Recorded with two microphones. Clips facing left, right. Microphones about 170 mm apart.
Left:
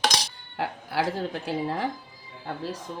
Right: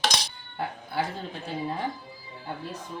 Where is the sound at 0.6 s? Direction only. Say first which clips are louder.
Left 2 dB; 90° left.